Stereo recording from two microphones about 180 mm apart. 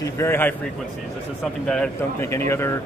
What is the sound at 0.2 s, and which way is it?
Speech, 10° left (ahead or behind).